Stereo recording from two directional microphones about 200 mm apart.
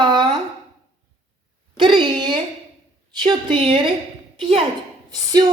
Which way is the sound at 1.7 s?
25° right (ahead or behind).